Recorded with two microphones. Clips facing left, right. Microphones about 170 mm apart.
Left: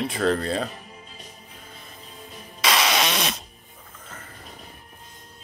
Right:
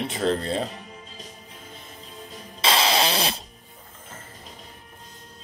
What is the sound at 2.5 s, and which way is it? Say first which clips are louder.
Fart: right 1 dB; 30° right (ahead or behind).